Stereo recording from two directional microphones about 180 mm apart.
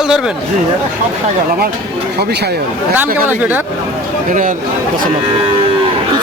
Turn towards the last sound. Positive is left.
turn(degrees=-45)  # may be behind; listen again after turning